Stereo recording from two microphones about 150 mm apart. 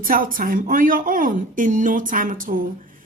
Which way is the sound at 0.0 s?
70° right (ahead or behind).